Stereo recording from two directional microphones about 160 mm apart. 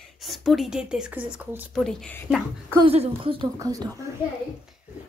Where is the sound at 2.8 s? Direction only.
35° right (ahead or behind).